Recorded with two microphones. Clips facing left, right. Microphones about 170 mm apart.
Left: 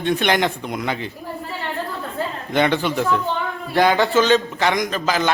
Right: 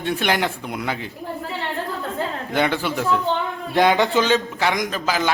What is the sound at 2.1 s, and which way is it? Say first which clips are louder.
A woman's voice: left 2 dB; 5° right (ahead or behind).